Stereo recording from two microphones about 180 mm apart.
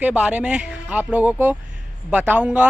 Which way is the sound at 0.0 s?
5° right (ahead or behind).